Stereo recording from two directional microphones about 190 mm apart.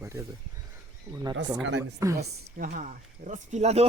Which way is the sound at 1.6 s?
70° right (ahead or behind).